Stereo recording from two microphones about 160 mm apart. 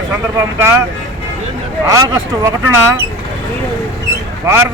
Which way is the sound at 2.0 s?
20° right (ahead or behind).